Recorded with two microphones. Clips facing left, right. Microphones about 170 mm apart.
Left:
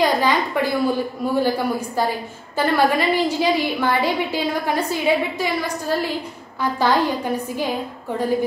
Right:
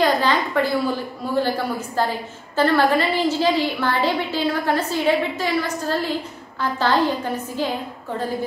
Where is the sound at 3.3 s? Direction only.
15° left (ahead or behind).